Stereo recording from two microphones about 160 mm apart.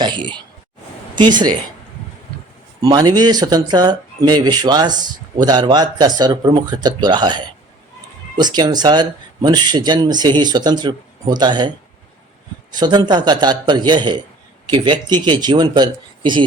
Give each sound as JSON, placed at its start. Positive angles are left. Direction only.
{"t": 0.0, "sound": "speech", "side_deg": -30}
{"t": 2.8, "sound": "speech", "side_deg": -25}
{"t": 12.7, "sound": "speech", "side_deg": -25}